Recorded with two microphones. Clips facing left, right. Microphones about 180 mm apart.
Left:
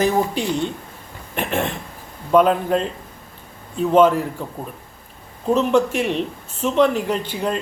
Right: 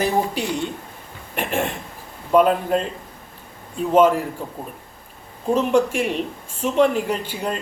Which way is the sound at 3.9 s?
10° right (ahead or behind).